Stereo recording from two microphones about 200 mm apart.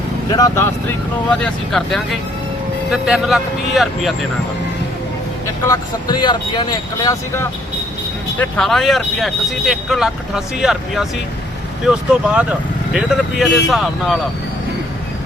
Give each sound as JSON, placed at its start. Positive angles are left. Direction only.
{"t": 0.3, "sound": "speech", "side_deg": 20}
{"t": 1.3, "sound": "speech", "side_deg": 5}
{"t": 5.6, "sound": "speech", "side_deg": 20}
{"t": 8.4, "sound": "speech", "side_deg": 0}